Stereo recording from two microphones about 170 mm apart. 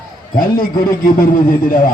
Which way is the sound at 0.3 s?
55° left (ahead or behind).